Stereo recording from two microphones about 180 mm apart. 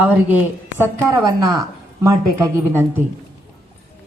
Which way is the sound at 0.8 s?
15° right (ahead or behind).